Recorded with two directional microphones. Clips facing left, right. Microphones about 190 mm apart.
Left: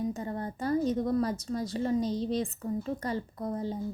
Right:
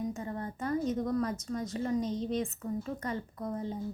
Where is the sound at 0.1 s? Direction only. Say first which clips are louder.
Left 3 dB; 35° left (ahead or behind).